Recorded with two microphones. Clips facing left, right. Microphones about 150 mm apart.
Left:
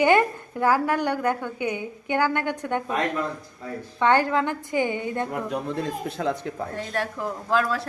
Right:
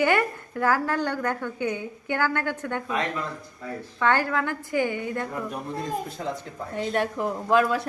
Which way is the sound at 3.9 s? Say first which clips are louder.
Left 3 dB; 20° left (ahead or behind).